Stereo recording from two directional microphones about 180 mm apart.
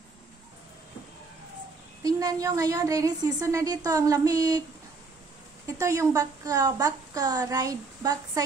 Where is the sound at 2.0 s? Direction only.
20° right (ahead or behind).